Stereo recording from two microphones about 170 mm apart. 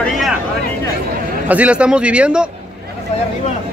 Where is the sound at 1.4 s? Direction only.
10° right (ahead or behind).